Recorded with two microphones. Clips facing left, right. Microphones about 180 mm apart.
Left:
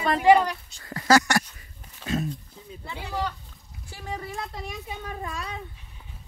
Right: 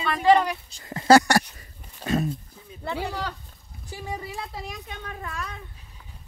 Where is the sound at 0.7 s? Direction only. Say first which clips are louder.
Right 4 dB; 25° right (ahead or behind).